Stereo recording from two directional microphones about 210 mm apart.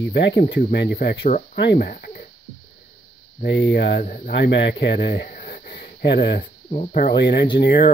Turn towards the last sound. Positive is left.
turn(degrees=50)  # may be behind; listen again after turning